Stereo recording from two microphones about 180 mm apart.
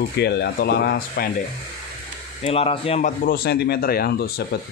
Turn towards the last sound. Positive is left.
turn(degrees=60)  # may be behind; listen again after turning